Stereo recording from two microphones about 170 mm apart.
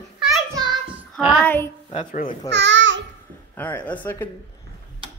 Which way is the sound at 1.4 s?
10° left (ahead or behind).